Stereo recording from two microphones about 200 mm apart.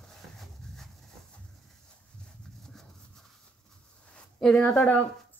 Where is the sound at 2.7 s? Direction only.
5° left (ahead or behind).